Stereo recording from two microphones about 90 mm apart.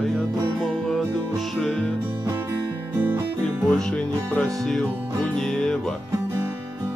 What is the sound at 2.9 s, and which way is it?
Music, 20° right (ahead or behind).